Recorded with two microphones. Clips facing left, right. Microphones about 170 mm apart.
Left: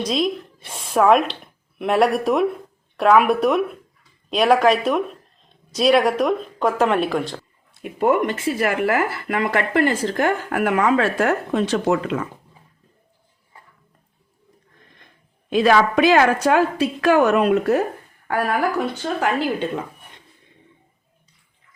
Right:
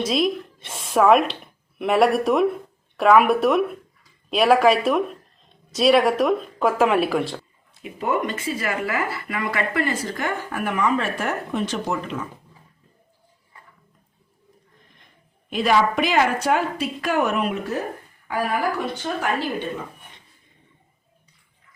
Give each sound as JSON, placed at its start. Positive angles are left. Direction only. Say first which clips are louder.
{"t": 0.0, "sound": "speech", "louder": "even", "side_deg": -5}
{"t": 7.8, "sound": "speech", "louder": "left 6 dB", "side_deg": 55}
{"t": 15.7, "sound": "a woman's voice", "louder": "left 3 dB", "side_deg": 90}
{"t": 19.0, "sound": "a woman's voice", "louder": "left 2 dB", "side_deg": 90}